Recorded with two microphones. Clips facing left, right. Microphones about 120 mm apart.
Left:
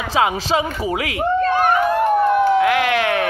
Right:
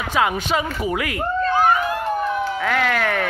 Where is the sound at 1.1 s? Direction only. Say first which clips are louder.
Left 5 dB; 65° left (ahead or behind).